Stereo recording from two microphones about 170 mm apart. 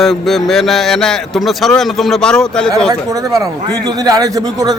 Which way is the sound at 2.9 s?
20° right (ahead or behind).